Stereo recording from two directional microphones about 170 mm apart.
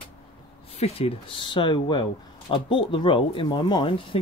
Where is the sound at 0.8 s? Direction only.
35° left (ahead or behind).